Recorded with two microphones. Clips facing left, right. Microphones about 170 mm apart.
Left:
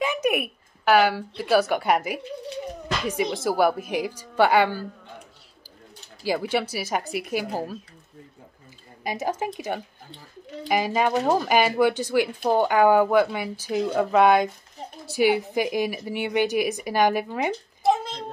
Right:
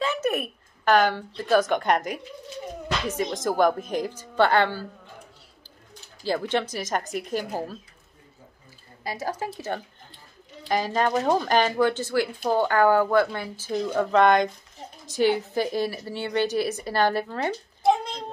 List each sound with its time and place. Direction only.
0.0 s a woman's voice: 15° left (ahead or behind)
6.2 s speech: 10° left (ahead or behind)
9.0 s speech: 20° left (ahead or behind)
17.8 s cat: centre (ahead or behind)